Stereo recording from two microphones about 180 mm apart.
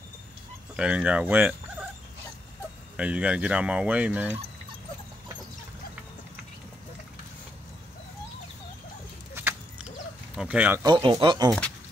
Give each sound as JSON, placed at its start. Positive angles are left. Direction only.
{"t": 0.7, "sound": "speech", "side_deg": -5}
{"t": 3.0, "sound": "speech", "side_deg": -5}
{"t": 9.3, "sound": "a sound", "side_deg": -10}
{"t": 10.3, "sound": "speech", "side_deg": -5}
{"t": 10.8, "sound": "speech", "side_deg": -20}